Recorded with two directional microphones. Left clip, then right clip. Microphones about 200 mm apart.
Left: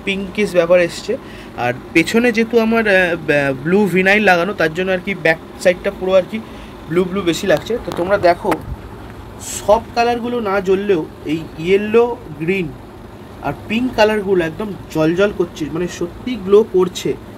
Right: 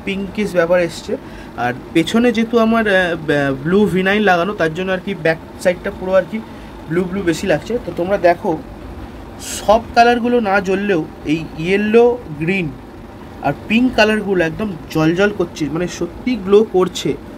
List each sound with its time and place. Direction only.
0.0 s a man's voice: 20° right (ahead or behind)
9.7 s a man's voice: 25° right (ahead or behind)